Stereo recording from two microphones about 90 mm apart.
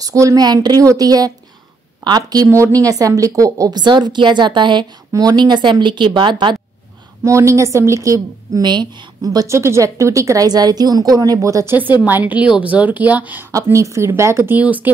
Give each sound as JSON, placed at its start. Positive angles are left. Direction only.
{"t": 0.0, "sound": "a woman's voice", "side_deg": -40}
{"t": 3.8, "sound": "speech", "side_deg": -55}
{"t": 7.2, "sound": "a woman's voice", "side_deg": -35}
{"t": 8.6, "sound": "a woman's voice", "side_deg": -50}
{"t": 9.6, "sound": "a woman's voice", "side_deg": -30}
{"t": 12.0, "sound": "a woman's voice", "side_deg": -20}
{"t": 13.5, "sound": "a woman's voice", "side_deg": -35}